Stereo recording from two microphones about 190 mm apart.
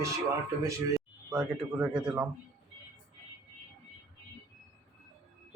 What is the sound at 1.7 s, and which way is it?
Speech, 5° right (ahead or behind).